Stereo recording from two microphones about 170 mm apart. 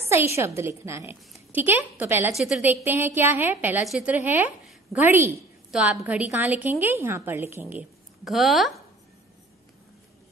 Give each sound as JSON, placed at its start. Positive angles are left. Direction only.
{"t": 0.4, "sound": "a woman's voice", "side_deg": -15}
{"t": 8.3, "sound": "speech", "side_deg": 0}